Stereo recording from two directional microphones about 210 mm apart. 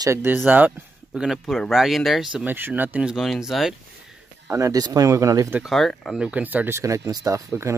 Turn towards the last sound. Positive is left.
turn(degrees=-15)  # may be behind; listen again after turning